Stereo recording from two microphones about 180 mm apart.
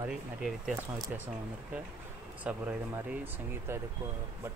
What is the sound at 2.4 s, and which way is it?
Speech, 5° right (ahead or behind).